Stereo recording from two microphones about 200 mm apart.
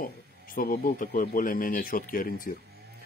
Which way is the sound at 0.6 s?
45° left (ahead or behind).